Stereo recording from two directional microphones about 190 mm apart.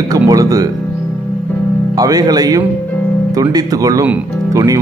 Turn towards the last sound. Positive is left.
turn(degrees=-20)  # may be behind; listen again after turning